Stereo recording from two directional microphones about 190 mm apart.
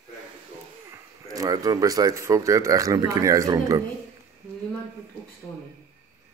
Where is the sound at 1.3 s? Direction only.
20° right (ahead or behind).